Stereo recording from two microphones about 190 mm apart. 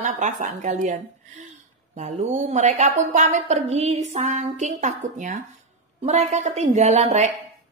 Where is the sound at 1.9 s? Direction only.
40° right (ahead or behind).